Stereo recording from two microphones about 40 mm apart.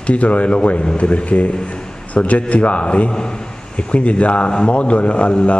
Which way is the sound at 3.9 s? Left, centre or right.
Left.